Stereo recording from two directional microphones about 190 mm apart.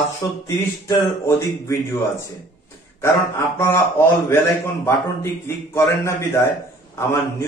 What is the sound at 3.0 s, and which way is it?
A man's voice, 15° left (ahead or behind).